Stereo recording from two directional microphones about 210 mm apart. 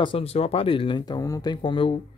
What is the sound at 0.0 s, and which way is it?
Speech, 25° left (ahead or behind).